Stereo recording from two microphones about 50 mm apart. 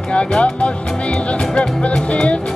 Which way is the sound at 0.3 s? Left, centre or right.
Left.